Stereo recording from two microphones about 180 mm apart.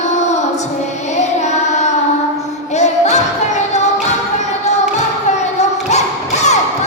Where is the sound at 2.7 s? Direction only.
40° left (ahead or behind).